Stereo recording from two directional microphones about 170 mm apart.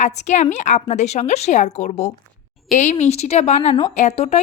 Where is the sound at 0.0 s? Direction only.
45° left (ahead or behind).